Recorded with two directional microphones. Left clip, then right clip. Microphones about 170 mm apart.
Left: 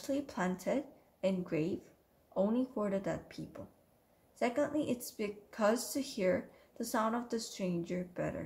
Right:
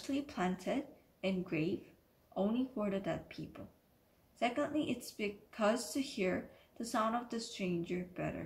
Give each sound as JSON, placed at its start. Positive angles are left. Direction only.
{"t": 0.0, "sound": "a woman's voice", "side_deg": 60}